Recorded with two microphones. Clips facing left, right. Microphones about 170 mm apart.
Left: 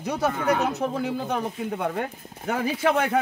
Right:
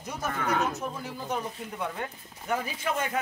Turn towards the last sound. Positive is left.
turn(degrees=70)  # may be behind; listen again after turning